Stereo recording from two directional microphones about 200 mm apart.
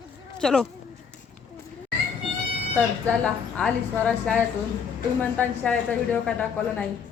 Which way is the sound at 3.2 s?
5° left (ahead or behind).